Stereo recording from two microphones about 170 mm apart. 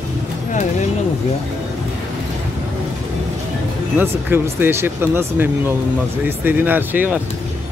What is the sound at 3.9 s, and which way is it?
Speech, 10° right (ahead or behind).